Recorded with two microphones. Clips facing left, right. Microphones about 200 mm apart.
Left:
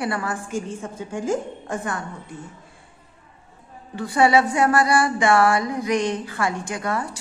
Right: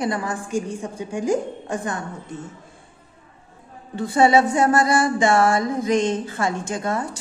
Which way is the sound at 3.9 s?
25° right (ahead or behind).